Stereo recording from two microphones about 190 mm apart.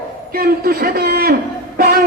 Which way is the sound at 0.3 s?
55° right (ahead or behind).